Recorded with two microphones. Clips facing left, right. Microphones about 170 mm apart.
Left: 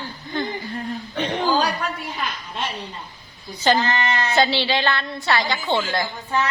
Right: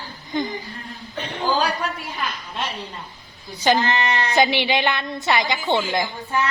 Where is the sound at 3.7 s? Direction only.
15° right (ahead or behind).